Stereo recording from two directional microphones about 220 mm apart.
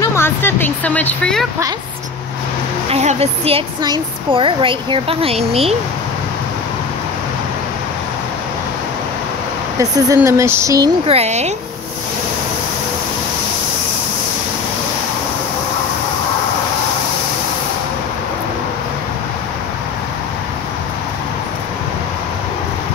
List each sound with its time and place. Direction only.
0.0 s speech: 10° left (ahead or behind)
2.9 s a woman's voice: 30° right (ahead or behind)
9.8 s speech: 15° right (ahead or behind)
11.1 s speech: 30° right (ahead or behind)